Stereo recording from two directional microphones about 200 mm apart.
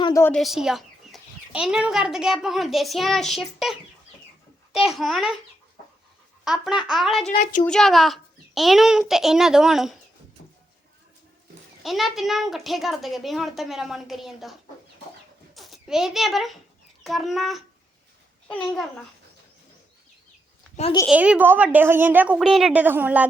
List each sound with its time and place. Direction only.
0.0 s a woman's voice: 15° left (ahead or behind)
0.3 s a woman's voice: centre (ahead or behind)
6.4 s a woman's voice: centre (ahead or behind)
7.3 s a woman's voice: 40° left (ahead or behind)
7.6 s a woman's voice: centre (ahead or behind)
11.8 s a woman's voice: centre (ahead or behind)
15.5 s a child's voice: centre (ahead or behind)
21.1 s a woman's voice: 5° right (ahead or behind)